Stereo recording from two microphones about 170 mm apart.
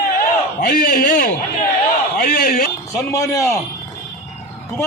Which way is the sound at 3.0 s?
20° left (ahead or behind).